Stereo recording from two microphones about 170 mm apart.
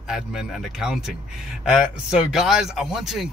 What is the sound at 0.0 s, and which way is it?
Speech, 5° right (ahead or behind).